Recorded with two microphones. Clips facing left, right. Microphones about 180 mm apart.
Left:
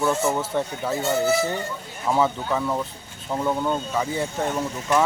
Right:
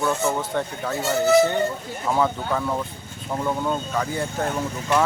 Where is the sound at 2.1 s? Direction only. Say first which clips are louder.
Left 1 dB; 5° left (ahead or behind).